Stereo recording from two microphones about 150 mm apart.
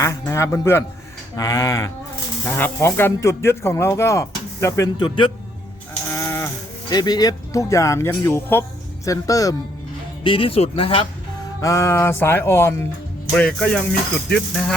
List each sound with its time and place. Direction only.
0.0 s speech: 20° left (ahead or behind)
5.0 s speech: 35° left (ahead or behind)
6.1 s sheep: 20° left (ahead or behind)
6.9 s speech: 25° left (ahead or behind)
10.2 s speech: 35° left (ahead or behind)
11.6 s speech: 20° left (ahead or behind); by 14.8 s 5° left (ahead or behind)